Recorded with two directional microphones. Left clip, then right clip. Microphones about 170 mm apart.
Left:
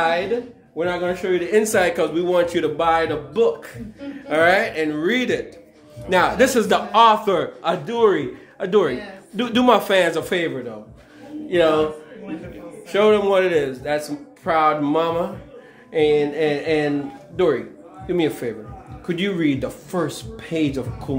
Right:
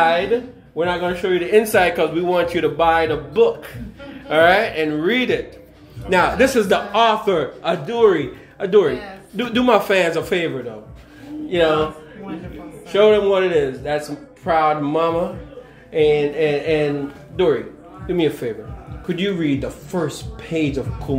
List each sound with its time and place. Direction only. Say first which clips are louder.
0.0 s a man's voice: right 4 dB; 30° left (ahead or behind)
11.4 s speech: even; 35° left (ahead or behind)
12.9 s a man's voice: right 2 dB; 30° left (ahead or behind)